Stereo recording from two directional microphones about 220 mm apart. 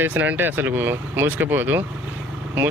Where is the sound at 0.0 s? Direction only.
10° right (ahead or behind).